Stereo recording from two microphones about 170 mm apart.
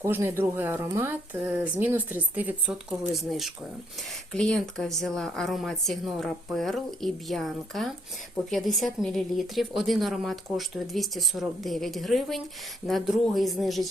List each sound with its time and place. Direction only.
0.0 s a woman's voice: 15° right (ahead or behind)